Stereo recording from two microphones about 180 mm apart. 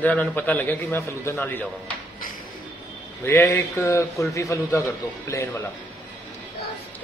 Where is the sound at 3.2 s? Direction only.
15° left (ahead or behind).